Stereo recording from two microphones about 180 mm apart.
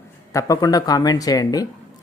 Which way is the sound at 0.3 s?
20° left (ahead or behind).